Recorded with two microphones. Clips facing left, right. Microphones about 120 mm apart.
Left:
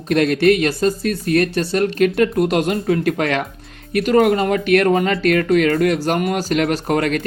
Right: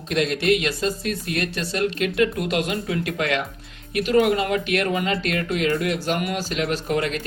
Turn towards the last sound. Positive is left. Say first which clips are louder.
# left 6 dB
turn(degrees=55)  # may be behind; listen again after turning